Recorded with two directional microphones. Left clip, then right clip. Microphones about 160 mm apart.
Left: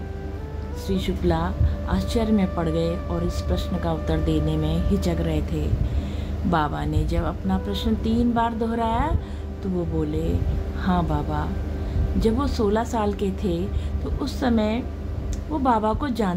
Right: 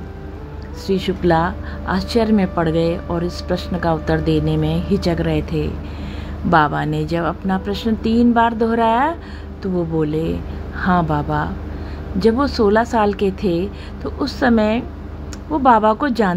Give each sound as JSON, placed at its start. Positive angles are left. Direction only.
{"t": 0.8, "sound": "a woman's voice", "side_deg": -20}